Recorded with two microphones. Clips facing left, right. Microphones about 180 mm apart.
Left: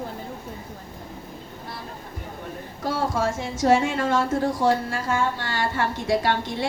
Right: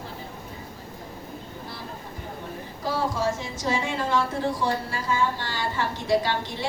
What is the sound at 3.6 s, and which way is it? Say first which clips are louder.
A woman's voice: left 7 dB; 50° left (ahead or behind).